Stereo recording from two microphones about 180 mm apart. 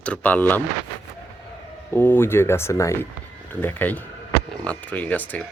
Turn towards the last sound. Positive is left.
turn(degrees=10)  # may be behind; listen again after turning